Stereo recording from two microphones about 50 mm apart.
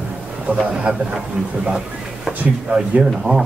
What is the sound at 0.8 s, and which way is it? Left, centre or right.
Speech, centre.